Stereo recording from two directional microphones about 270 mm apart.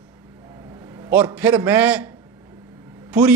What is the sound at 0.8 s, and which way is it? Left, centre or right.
A man's voice, centre.